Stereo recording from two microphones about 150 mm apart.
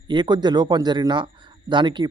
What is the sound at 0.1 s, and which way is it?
Speech, 30° right (ahead or behind).